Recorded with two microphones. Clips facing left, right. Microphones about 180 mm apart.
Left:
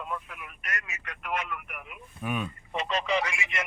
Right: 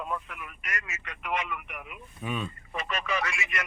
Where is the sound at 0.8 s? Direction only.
10° left (ahead or behind).